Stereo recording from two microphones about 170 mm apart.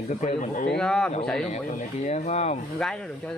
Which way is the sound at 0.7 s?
5° left (ahead or behind).